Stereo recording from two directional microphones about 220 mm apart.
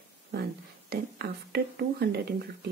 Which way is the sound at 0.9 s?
45° right (ahead or behind).